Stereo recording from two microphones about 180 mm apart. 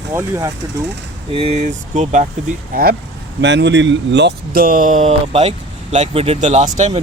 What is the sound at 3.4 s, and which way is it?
Speech, 75° right (ahead or behind).